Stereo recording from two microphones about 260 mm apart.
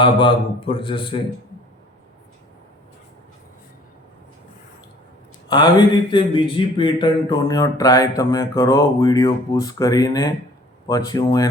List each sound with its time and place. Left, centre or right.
0.0 s a man's voice: centre
5.5 s speech: centre